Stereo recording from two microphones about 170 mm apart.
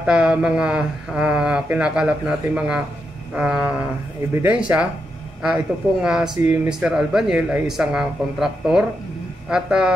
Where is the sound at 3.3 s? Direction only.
5° right (ahead or behind).